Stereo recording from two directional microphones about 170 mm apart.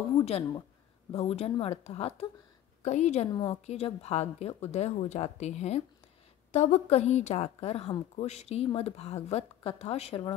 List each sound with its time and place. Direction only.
0.2 s a woman's voice: 40° left (ahead or behind)